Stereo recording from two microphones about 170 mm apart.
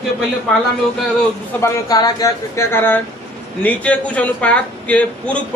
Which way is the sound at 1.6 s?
25° left (ahead or behind).